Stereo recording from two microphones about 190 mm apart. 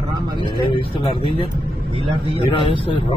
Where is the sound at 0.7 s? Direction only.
30° left (ahead or behind).